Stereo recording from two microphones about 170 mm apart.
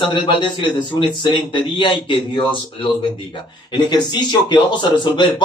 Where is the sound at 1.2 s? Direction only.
30° left (ahead or behind).